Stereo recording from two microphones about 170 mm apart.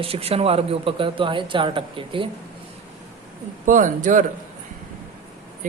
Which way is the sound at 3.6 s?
50° right (ahead or behind).